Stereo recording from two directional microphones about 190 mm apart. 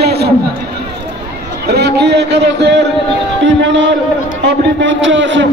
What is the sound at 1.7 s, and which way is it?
A man's voice, 60° right (ahead or behind).